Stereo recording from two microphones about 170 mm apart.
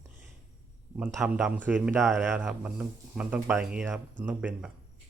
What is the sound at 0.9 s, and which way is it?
Speech, 5° right (ahead or behind).